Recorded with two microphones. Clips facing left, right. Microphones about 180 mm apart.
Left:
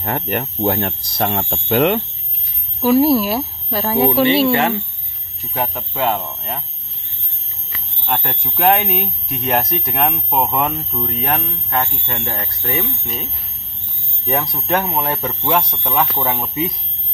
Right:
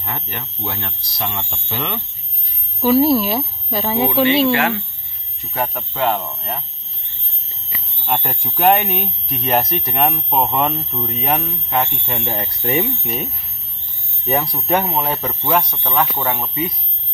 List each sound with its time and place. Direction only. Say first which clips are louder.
0.0 s speech: left 8 dB; 55° left (ahead or behind)
2.8 s speech: left 1 dB; 5° left (ahead or behind)
5.5 s speech: even; 5° left (ahead or behind)
7.7 s speech: right 1 dB; 5° right (ahead or behind)
12.4 s speech: right 7 dB; 25° right (ahead or behind)
12.8 s speech: right 3 dB; 10° right (ahead or behind)
14.2 s speech: right 1 dB; centre (ahead or behind)